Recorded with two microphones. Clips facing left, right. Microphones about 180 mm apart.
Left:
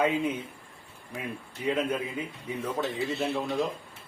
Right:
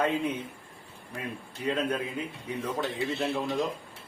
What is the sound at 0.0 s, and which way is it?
Speech, 10° left (ahead or behind).